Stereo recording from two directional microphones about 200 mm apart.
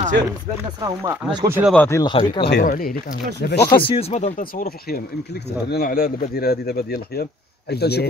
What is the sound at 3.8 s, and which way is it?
Speech, 30° left (ahead or behind).